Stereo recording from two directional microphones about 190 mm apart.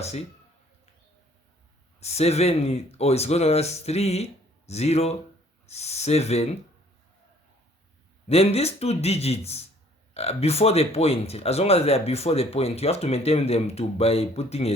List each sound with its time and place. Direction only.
0.0 s speech: 35° left (ahead or behind)
2.0 s speech: 35° left (ahead or behind)
8.3 s speech: 35° left (ahead or behind)